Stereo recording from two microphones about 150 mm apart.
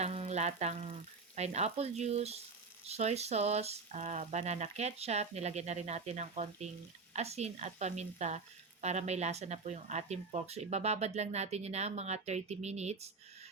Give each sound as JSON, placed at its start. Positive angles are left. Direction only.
{"t": 0.0, "sound": "speech", "side_deg": -45}